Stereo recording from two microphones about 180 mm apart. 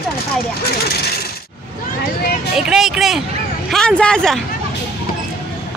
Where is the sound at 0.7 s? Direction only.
60° left (ahead or behind).